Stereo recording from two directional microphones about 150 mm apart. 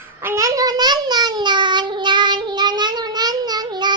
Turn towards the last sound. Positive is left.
turn(degrees=-30)  # may be behind; listen again after turning